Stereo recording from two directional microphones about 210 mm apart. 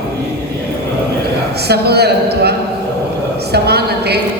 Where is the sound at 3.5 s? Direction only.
50° right (ahead or behind).